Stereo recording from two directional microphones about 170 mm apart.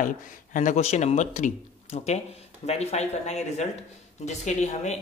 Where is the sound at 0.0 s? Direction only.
50° left (ahead or behind).